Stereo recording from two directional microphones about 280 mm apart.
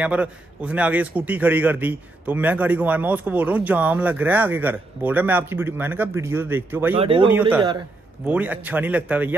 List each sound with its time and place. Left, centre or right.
0.0 s a man's voice: centre
7.0 s speech: centre
8.3 s a man's voice: centre